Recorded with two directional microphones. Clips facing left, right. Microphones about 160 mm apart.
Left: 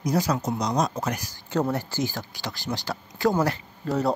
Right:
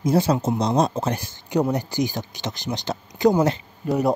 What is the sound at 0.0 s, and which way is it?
Speech, 25° right (ahead or behind).